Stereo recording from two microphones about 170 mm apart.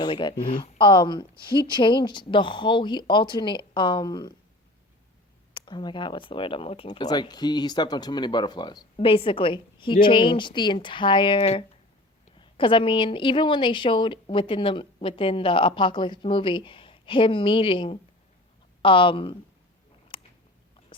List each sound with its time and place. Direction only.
0.0 s speech: 25° left (ahead or behind)
5.5 s speech: 25° left (ahead or behind)
20.1 s chewing: 30° left (ahead or behind)